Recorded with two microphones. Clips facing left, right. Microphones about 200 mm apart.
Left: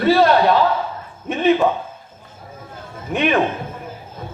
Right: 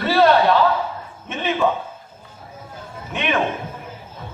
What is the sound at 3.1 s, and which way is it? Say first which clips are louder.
Speech: left 5 dB; 45° left (ahead or behind).